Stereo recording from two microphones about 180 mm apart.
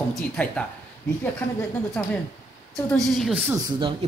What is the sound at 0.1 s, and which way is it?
Speech, 5° left (ahead or behind).